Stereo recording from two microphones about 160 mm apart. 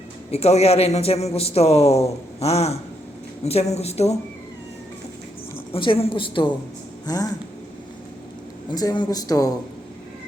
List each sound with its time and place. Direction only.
0.3 s speech: 40° left (ahead or behind)
5.7 s speech: 35° left (ahead or behind)
8.7 s speech: 25° left (ahead or behind)